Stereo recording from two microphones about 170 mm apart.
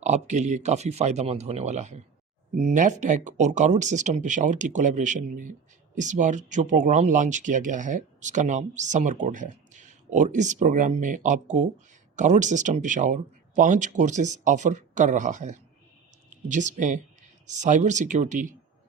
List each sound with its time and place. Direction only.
0.0 s speech: 45° right (ahead or behind)